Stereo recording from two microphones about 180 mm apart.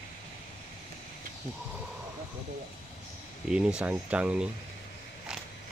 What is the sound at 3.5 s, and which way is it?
Speech, 5° right (ahead or behind).